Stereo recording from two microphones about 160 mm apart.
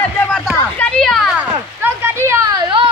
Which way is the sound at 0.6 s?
10° left (ahead or behind).